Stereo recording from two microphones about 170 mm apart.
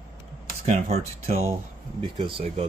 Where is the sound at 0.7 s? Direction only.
40° right (ahead or behind).